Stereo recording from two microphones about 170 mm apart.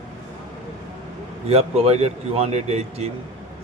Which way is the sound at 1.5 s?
35° right (ahead or behind).